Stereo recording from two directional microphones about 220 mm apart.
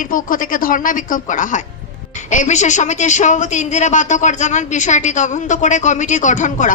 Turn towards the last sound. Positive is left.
turn(degrees=35)  # may be behind; listen again after turning